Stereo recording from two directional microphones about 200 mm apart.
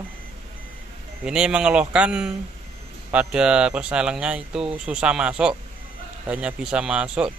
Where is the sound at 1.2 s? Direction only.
5° right (ahead or behind).